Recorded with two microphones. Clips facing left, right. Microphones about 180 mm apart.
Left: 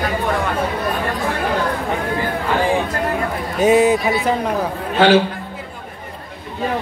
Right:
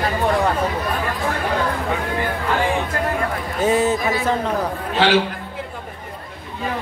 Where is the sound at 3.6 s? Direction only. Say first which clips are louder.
Left 5 dB; 15° left (ahead or behind).